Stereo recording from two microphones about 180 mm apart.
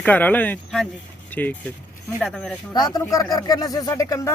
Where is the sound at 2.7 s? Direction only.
20° left (ahead or behind).